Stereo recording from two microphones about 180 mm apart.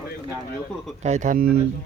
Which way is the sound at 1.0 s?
40° right (ahead or behind).